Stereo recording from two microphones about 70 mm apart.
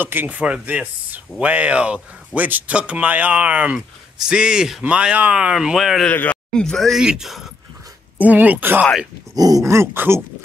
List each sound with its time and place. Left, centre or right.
0.0 s speech: right; by 6.0 s centre
6.5 s speech: centre
8.2 s speech: right
9.3 s dog: right
9.9 s speech: right